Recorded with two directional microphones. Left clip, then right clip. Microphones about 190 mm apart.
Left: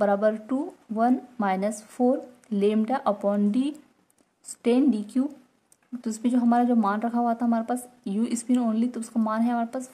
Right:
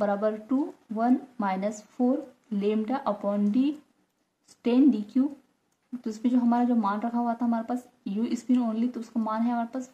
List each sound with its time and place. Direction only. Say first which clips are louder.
0.0 s speech: left 4 dB; 30° left (ahead or behind)